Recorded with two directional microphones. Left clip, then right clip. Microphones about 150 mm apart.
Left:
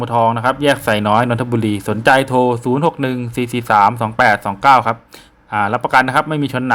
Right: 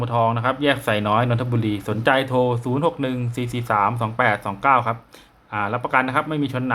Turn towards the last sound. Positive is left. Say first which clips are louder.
# left 6 dB
turn(degrees=40)  # may be behind; listen again after turning